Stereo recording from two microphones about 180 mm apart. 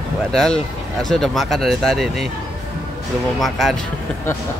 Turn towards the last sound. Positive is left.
turn(degrees=0)  # may be behind; listen again after turning